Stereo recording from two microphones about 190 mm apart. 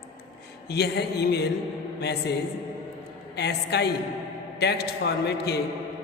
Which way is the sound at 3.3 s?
60° left (ahead or behind).